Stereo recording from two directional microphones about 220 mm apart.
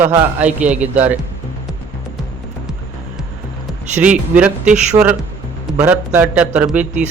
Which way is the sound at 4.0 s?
10° right (ahead or behind).